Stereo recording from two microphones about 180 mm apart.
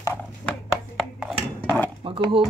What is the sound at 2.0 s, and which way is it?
Speech, 30° right (ahead or behind).